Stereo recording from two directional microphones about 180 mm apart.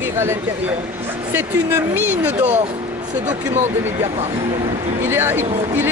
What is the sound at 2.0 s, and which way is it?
Speech, 10° right (ahead or behind).